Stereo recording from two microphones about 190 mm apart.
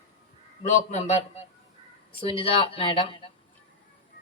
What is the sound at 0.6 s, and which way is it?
Speech, 35° left (ahead or behind).